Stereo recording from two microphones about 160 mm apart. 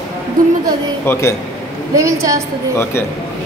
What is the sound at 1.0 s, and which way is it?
Speech, 15° left (ahead or behind).